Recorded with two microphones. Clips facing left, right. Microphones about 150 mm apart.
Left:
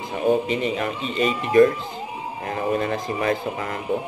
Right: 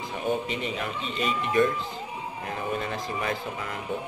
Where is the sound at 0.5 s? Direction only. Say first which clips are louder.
Left 7 dB; 60° left (ahead or behind).